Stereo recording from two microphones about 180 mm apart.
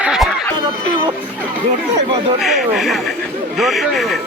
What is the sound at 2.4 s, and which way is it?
Speech, centre (ahead or behind).